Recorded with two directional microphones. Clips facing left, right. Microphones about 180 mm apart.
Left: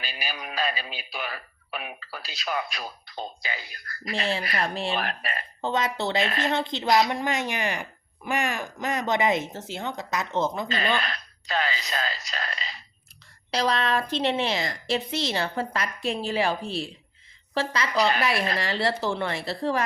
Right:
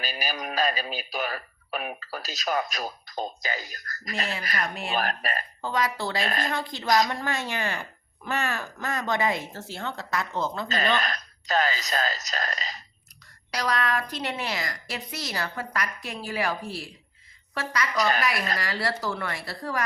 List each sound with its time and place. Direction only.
0.0 s speech: 40° right (ahead or behind)
4.5 s speech: 30° left (ahead or behind)
4.9 s speech: 40° right (ahead or behind)
5.6 s a woman's voice: 25° left (ahead or behind)
10.7 s speech: 40° right (ahead or behind)
13.5 s a woman's voice: 25° left (ahead or behind)